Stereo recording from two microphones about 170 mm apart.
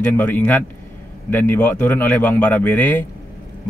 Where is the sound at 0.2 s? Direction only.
10° left (ahead or behind).